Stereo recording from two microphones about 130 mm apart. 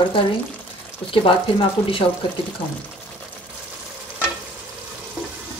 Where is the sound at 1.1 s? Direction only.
40° left (ahead or behind).